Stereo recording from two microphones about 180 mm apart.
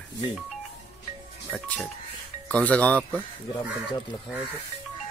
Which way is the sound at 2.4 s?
5° left (ahead or behind).